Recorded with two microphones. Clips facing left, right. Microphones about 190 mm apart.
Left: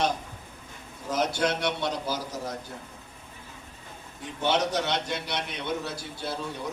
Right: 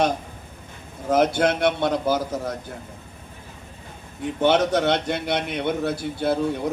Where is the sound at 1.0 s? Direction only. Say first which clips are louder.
Right 8 dB; 55° right (ahead or behind).